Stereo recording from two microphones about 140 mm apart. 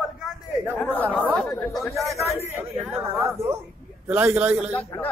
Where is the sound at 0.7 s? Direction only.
10° left (ahead or behind).